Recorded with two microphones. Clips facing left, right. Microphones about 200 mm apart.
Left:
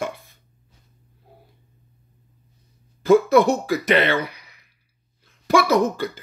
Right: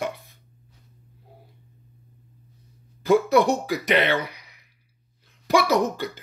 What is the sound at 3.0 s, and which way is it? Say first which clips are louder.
Speech: left 3 dB; 15° right (ahead or behind).